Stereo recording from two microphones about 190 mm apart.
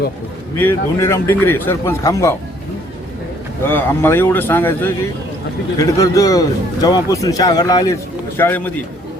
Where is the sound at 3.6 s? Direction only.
10° left (ahead or behind).